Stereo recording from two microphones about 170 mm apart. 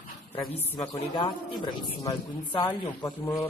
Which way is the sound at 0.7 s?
30° left (ahead or behind).